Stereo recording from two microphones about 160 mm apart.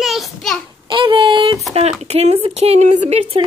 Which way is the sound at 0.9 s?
30° right (ahead or behind).